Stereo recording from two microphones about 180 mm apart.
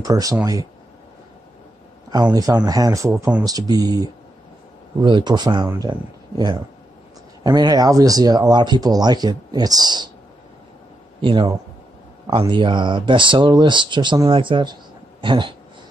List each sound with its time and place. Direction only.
0.0 s speech: 20° right (ahead or behind)
2.3 s speech: 20° right (ahead or behind)
3.2 s speech: 10° right (ahead or behind)
3.4 s speech: 20° right (ahead or behind)
11.1 s speech: 25° right (ahead or behind)